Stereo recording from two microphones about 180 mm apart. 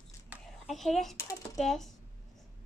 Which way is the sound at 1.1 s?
15° left (ahead or behind).